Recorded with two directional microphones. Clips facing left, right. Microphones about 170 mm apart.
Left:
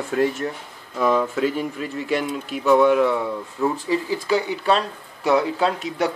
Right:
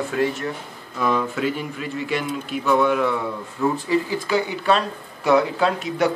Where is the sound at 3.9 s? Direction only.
30° left (ahead or behind).